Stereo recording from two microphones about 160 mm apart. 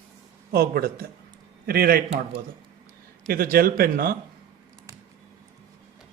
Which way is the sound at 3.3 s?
70° right (ahead or behind).